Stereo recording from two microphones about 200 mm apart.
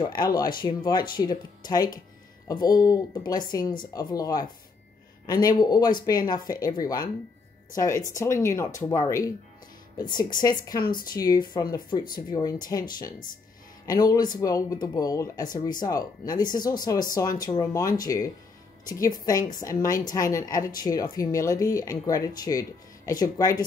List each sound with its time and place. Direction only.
0.0 s speech: 20° left (ahead or behind)